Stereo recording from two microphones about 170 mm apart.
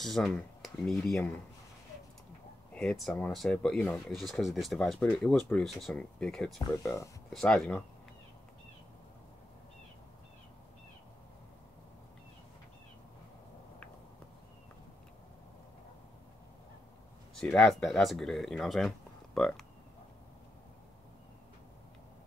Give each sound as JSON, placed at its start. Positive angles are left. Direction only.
{"t": 0.0, "sound": "speech", "side_deg": 0}
{"t": 2.7, "sound": "speech", "side_deg": 5}
{"t": 6.8, "sound": "speech", "side_deg": 20}
{"t": 7.2, "sound": "speech", "side_deg": 5}
{"t": 17.4, "sound": "speech", "side_deg": 5}